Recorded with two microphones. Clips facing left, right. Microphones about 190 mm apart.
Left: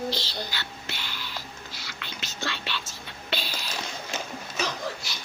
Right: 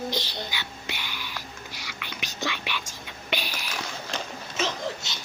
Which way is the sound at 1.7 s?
15° right (ahead or behind).